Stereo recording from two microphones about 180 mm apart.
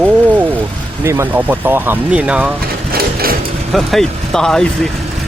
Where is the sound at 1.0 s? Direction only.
15° right (ahead or behind).